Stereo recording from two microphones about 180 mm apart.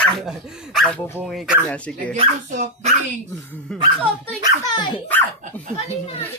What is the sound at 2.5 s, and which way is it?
Speech, 40° right (ahead or behind).